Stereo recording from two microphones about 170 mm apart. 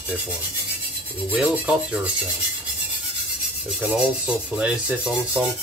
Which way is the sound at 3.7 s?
5° right (ahead or behind).